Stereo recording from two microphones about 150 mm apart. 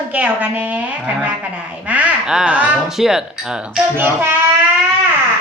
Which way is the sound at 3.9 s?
15° right (ahead or behind).